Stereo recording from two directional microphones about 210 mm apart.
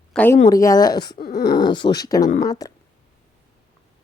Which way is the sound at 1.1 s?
45° left (ahead or behind).